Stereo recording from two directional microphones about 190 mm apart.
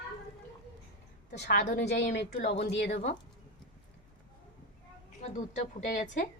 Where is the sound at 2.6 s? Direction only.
70° left (ahead or behind).